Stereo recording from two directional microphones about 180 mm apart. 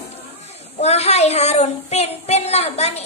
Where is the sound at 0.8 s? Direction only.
35° left (ahead or behind).